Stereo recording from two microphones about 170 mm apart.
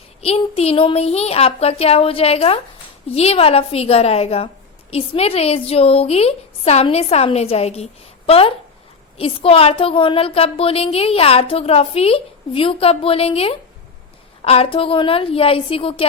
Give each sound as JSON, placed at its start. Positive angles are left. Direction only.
{"t": 0.2, "sound": "a woman's voice", "side_deg": 35}